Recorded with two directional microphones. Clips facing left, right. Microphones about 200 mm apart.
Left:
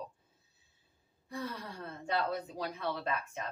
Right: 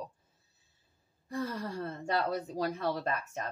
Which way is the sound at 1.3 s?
45° right (ahead or behind).